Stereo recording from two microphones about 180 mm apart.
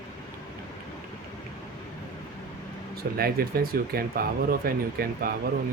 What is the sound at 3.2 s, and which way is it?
Speech, 55° right (ahead or behind).